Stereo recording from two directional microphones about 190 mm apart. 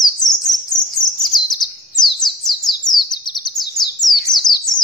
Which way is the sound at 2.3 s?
Centre (ahead or behind).